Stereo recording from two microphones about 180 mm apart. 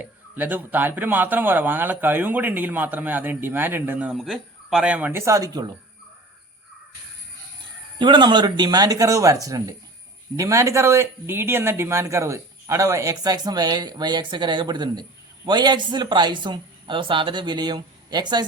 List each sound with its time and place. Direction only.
0.0 s speech: 10° right (ahead or behind)
7.9 s speech: 25° right (ahead or behind)